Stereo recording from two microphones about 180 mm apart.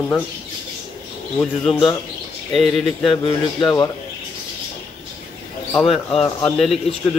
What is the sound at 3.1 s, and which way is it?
Speech, 30° left (ahead or behind).